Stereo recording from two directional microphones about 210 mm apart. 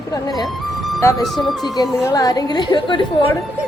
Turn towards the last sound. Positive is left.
turn(degrees=20)  # may be behind; listen again after turning